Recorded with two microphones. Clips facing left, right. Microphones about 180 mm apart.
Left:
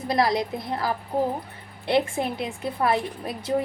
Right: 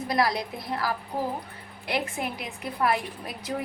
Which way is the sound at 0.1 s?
25° left (ahead or behind).